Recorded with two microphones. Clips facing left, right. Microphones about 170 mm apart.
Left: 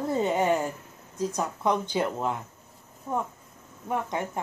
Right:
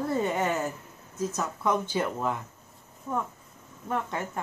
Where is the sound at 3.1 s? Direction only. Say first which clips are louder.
Left 1 dB; 30° left (ahead or behind).